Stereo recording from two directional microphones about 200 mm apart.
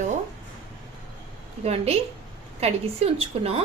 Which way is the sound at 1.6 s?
30° right (ahead or behind).